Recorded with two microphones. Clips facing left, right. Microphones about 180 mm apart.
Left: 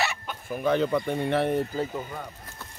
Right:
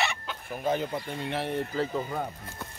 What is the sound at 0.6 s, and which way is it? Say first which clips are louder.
Speech: left 5 dB; 65° left (ahead or behind).